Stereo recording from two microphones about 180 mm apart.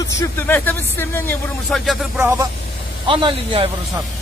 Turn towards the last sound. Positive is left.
turn(degrees=-30)  # may be behind; listen again after turning